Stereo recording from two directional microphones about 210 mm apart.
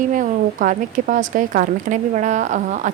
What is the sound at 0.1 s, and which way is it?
Speech, 40° right (ahead or behind).